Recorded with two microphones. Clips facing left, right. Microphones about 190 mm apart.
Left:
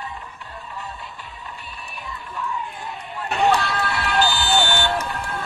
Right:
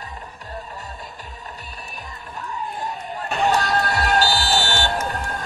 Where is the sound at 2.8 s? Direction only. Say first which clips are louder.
Right 3 dB; 40° right (ahead or behind).